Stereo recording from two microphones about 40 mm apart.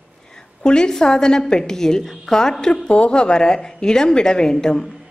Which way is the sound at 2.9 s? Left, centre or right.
Left.